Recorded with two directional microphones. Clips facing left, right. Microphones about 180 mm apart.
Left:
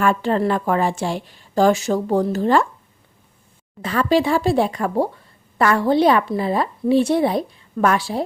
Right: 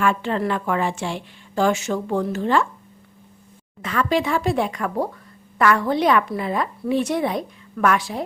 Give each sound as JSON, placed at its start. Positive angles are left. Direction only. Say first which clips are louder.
{"t": 0.0, "sound": "a woman's voice", "louder": "left 3 dB", "side_deg": 40}
{"t": 3.8, "sound": "a woman's voice", "louder": "left 4 dB", "side_deg": 35}